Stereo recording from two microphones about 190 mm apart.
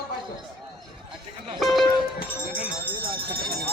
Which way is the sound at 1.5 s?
Centre (ahead or behind).